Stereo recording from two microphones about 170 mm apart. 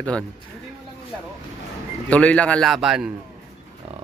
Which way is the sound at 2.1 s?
5° left (ahead or behind).